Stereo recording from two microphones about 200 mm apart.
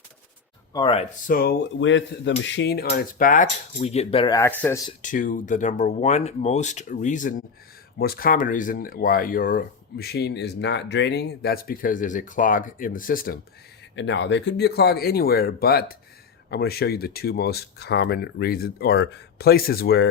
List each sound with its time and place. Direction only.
0.7 s speech: 25° left (ahead or behind)
1.3 s speech: 50° left (ahead or behind)
1.8 s cutlery: 70° left (ahead or behind); by 3.4 s 40° left (ahead or behind)
3.8 s speech: 30° left (ahead or behind)
4.4 s speech: 10° left (ahead or behind)
5.0 s speech: 40° left (ahead or behind)
13.9 s speech: 65° left (ahead or behind)